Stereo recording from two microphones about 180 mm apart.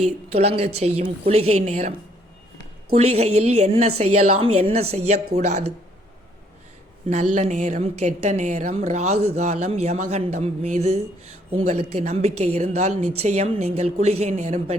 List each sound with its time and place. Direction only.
0.3 s a woman's voice: 35° right (ahead or behind)
2.9 s a woman's voice: 35° right (ahead or behind)
7.1 s a woman's voice: 40° right (ahead or behind)